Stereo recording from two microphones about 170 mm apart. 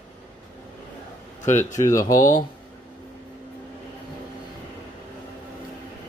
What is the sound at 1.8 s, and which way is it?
Speech, 20° left (ahead or behind).